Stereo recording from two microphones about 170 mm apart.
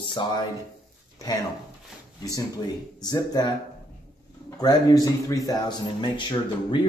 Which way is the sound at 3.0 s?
25° left (ahead or behind).